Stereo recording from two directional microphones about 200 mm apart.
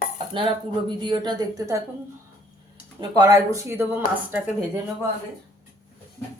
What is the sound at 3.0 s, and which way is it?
Speech, 20° right (ahead or behind).